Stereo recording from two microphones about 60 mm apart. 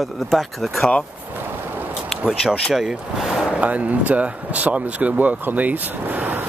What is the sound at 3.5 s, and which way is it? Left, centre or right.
Speech, right.